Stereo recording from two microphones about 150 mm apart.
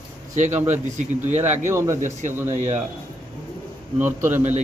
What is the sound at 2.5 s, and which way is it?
Speech, 50° right (ahead or behind).